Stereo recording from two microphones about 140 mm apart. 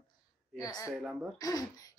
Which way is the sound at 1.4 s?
25° left (ahead or behind).